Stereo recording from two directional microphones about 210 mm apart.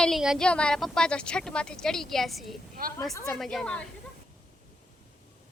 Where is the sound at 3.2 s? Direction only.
Centre (ahead or behind).